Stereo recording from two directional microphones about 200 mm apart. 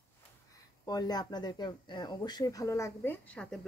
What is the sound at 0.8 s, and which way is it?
A woman's voice, 20° left (ahead or behind).